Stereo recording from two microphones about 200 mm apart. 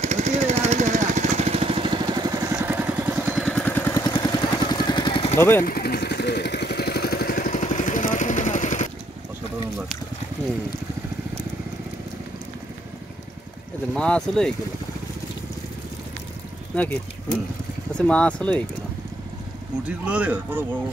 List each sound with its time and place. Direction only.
0.0 s vehicle: 35° right (ahead or behind); by 3.4 s 10° right (ahead or behind)
3.4 s vehicle: 5° left (ahead or behind); by 5.4 s 25° left (ahead or behind)
5.6 s vehicle: 50° left (ahead or behind)
13.9 s speech: 5° left (ahead or behind)
16.7 s speech: 5° left (ahead or behind)
17.9 s speech: 5° left (ahead or behind)
20.1 s speech: 5° right (ahead or behind)